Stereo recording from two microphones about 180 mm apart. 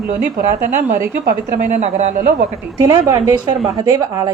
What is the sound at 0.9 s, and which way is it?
A woman's voice, 50° right (ahead or behind).